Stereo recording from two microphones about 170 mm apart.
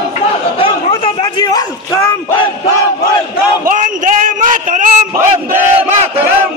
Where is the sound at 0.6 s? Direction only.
30° left (ahead or behind).